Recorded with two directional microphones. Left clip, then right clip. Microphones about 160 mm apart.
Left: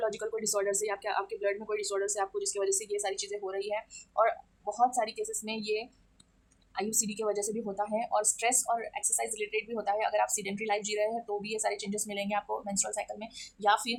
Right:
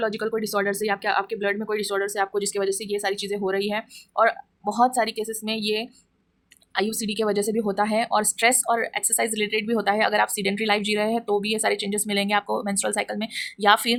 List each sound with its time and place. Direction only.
0.0 s speech: 20° right (ahead or behind)
4.6 s speech: 35° right (ahead or behind)
6.9 s speech: 30° right (ahead or behind)